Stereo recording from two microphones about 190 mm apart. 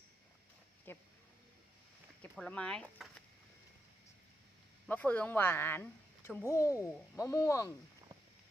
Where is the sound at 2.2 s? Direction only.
5° left (ahead or behind).